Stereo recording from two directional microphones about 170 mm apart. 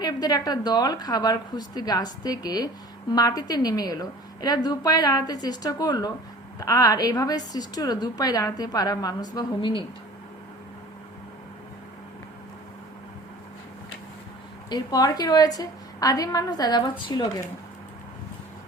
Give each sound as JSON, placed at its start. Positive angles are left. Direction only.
{"t": 0.0, "sound": "a woman's voice", "side_deg": 20}
{"t": 14.7, "sound": "a woman's voice", "side_deg": 20}